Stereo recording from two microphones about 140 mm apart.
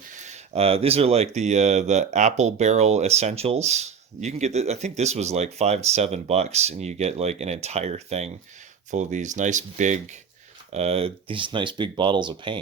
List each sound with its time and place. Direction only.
0.1 s speech: 60° right (ahead or behind); by 12.5 s 35° right (ahead or behind)